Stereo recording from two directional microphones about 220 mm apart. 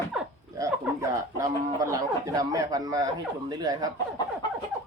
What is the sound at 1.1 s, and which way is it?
Speech, 15° right (ahead or behind).